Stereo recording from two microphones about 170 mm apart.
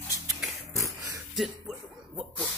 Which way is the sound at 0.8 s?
20° right (ahead or behind).